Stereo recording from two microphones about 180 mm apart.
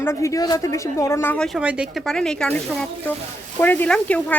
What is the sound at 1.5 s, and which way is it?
A woman's voice, 5° right (ahead or behind).